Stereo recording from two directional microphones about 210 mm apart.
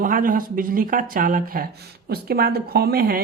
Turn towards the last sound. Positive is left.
turn(degrees=-45)  # may be behind; listen again after turning